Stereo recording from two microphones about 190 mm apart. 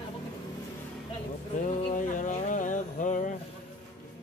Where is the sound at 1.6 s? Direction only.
40° left (ahead or behind).